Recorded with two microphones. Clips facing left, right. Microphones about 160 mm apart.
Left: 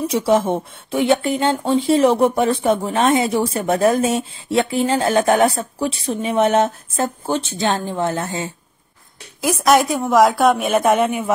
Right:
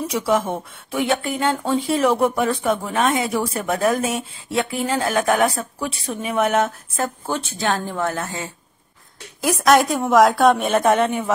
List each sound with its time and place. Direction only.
0.1 s speech: 25° left (ahead or behind)
9.4 s a woman's voice: centre (ahead or behind)